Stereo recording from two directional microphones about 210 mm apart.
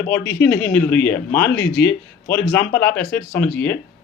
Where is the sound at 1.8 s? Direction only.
10° left (ahead or behind).